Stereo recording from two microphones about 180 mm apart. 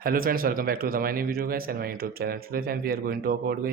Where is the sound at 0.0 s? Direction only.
55° right (ahead or behind).